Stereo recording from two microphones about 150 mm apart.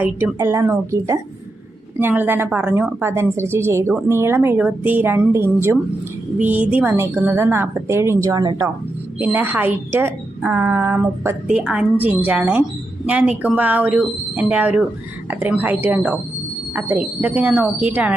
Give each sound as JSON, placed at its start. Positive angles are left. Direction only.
{"t": 0.3, "sound": "a woman's voice", "side_deg": -15}
{"t": 9.1, "sound": "a woman's voice", "side_deg": -10}